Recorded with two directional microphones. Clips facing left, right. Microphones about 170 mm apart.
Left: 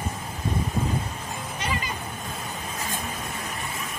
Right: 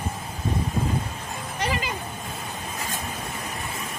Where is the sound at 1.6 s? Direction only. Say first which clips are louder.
Right 4 dB; 75° right (ahead or behind).